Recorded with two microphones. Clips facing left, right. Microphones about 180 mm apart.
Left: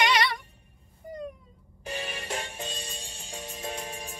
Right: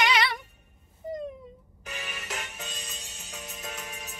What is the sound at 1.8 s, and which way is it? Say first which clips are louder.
Music: left 4 dB; 35° left (ahead or behind).